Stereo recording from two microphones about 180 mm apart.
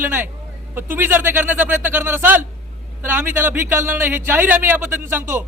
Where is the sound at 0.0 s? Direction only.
10° right (ahead or behind).